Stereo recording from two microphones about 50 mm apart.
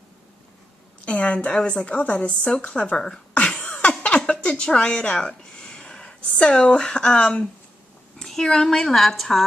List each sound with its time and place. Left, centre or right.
1.0 s a woman's voice: left
3.4 s cough: centre
4.0 s a sound: left
6.5 s a woman's voice: centre